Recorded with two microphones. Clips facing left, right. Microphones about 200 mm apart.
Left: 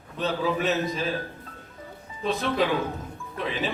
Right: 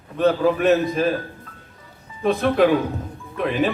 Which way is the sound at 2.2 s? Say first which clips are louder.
Right 8 dB; 55° right (ahead or behind).